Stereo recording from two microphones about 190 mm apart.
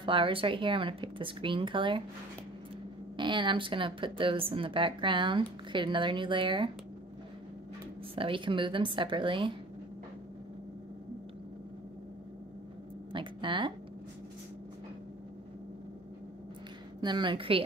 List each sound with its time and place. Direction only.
0.0 s speech: 25° right (ahead or behind)
3.2 s speech: 25° right (ahead or behind)
8.2 s speech: 25° right (ahead or behind)
13.1 s speech: 25° right (ahead or behind)
17.0 s speech: 25° right (ahead or behind)